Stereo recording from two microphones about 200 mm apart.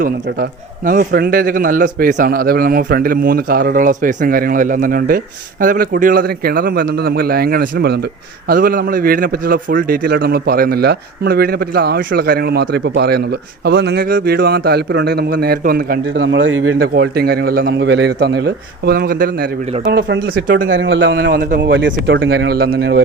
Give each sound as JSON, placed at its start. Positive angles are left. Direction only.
{"t": 0.9, "sound": "a man's voice", "side_deg": -50}
{"t": 16.0, "sound": "speech", "side_deg": -65}
{"t": 16.7, "sound": "a man's voice", "side_deg": -50}
{"t": 19.9, "sound": "speech", "side_deg": -55}